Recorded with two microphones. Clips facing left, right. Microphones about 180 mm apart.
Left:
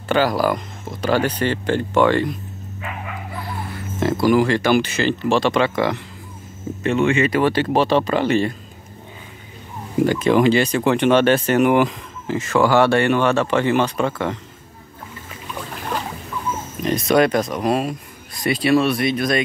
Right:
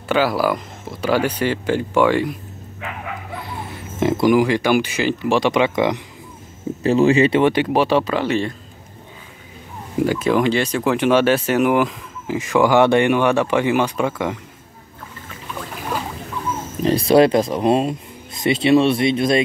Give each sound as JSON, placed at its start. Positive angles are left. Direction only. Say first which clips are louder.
{"t": 0.1, "sound": "speech", "louder": "even", "side_deg": -5}
{"t": 4.0, "sound": "speech", "louder": "right 1 dB", "side_deg": -15}
{"t": 6.8, "sound": "speech", "louder": "right 4 dB", "side_deg": -35}
{"t": 10.0, "sound": "speech", "louder": "left 2 dB", "side_deg": 0}
{"t": 12.4, "sound": "speech", "louder": "right 1 dB", "side_deg": -15}
{"t": 16.8, "sound": "speech", "louder": "right 3 dB", "side_deg": -30}